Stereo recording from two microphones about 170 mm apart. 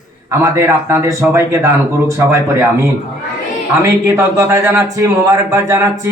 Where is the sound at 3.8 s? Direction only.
15° right (ahead or behind).